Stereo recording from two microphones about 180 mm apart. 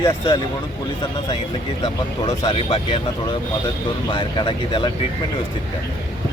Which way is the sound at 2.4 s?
30° left (ahead or behind).